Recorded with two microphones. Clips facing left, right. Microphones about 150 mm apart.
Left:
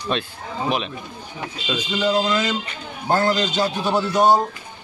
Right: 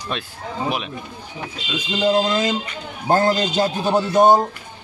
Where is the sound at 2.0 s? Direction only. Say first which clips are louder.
Right 2 dB; 45° right (ahead or behind).